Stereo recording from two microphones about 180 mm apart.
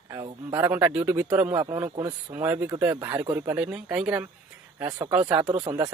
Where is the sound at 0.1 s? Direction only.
15° right (ahead or behind).